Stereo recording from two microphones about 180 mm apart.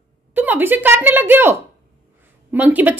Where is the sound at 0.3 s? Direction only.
10° right (ahead or behind).